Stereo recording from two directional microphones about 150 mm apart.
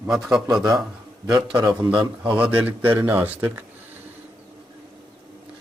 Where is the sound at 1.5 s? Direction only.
15° right (ahead or behind).